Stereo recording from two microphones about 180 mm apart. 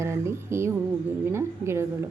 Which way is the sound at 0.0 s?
15° right (ahead or behind).